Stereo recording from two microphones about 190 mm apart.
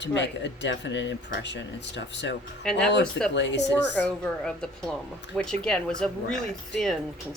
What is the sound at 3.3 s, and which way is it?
Speech, 70° left (ahead or behind).